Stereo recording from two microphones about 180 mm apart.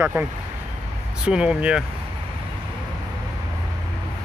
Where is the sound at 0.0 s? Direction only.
10° right (ahead or behind).